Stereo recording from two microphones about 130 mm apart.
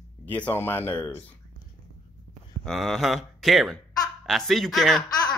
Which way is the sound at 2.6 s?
Centre (ahead or behind).